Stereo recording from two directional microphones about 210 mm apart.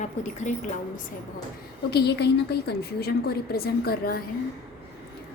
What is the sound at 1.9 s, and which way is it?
A woman's voice, 50° left (ahead or behind).